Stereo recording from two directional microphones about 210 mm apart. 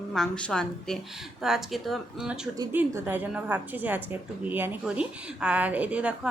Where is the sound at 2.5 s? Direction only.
15° right (ahead or behind).